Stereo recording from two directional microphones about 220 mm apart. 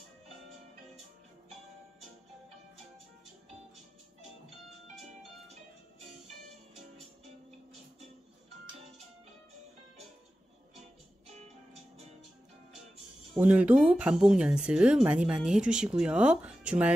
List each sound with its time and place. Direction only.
11.3 s music: 30° right (ahead or behind)
13.3 s speech: 5° right (ahead or behind)